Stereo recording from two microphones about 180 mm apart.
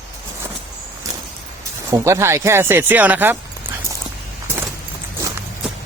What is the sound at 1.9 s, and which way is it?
A man's voice, 15° right (ahead or behind).